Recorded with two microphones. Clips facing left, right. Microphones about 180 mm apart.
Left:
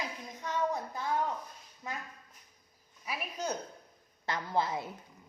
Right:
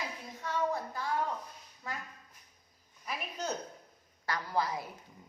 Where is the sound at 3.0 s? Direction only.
10° left (ahead or behind).